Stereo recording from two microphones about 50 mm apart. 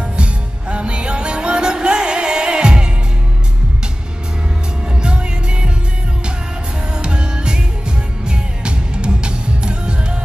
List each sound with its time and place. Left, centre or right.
0.2 s music: right
5.0 s music: centre
7.0 s music: centre